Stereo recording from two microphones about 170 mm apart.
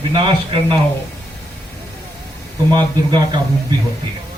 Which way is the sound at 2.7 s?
25° right (ahead or behind).